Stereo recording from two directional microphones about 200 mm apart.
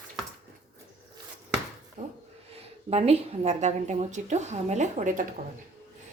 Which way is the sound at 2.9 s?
30° right (ahead or behind).